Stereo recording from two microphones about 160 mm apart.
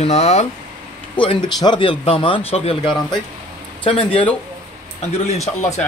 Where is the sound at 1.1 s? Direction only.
35° left (ahead or behind).